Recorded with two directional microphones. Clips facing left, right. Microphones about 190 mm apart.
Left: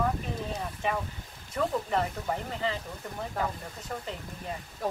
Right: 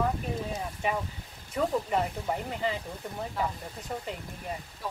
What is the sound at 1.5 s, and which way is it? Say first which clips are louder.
Speech: right 1 dB; 10° right (ahead or behind).